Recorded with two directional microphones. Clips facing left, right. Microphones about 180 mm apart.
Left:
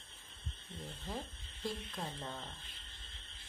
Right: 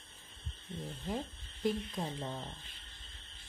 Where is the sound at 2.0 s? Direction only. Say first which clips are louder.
Right 4 dB; 15° right (ahead or behind).